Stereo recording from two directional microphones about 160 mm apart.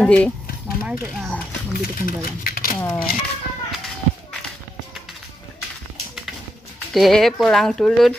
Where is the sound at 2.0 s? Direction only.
65° left (ahead or behind).